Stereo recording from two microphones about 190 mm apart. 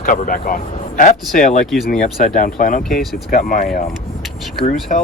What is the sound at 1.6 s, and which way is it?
Speech, centre (ahead or behind).